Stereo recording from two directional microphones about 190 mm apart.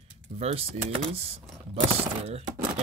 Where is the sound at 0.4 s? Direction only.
30° right (ahead or behind).